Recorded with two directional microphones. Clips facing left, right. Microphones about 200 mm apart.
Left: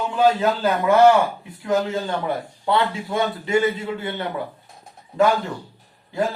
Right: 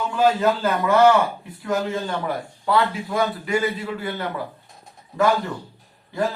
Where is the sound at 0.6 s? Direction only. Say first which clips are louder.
Left 3 dB; 20° left (ahead or behind).